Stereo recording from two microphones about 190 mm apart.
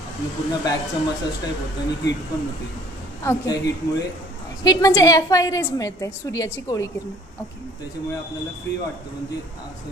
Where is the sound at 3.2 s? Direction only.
15° left (ahead or behind).